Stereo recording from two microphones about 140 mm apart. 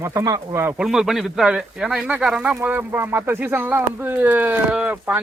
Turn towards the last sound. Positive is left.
turn(degrees=-10)  # may be behind; listen again after turning